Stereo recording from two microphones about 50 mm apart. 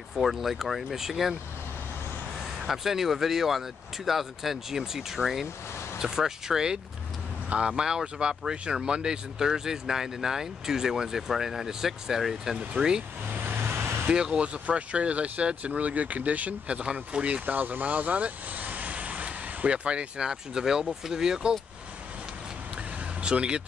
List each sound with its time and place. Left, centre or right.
0.1 s speech: centre
2.6 s speech: centre
13.3 s vehicle: right
14.1 s speech: centre
17.5 s speech: right; by 21.5 s centre
23.2 s speech: centre